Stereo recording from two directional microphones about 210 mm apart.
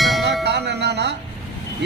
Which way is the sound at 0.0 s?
Centre (ahead or behind).